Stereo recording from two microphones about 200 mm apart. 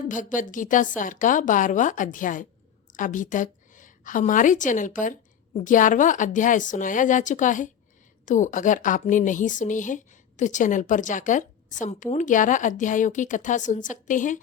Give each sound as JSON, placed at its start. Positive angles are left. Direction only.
{"t": 0.1, "sound": "a woman's voice", "side_deg": 40}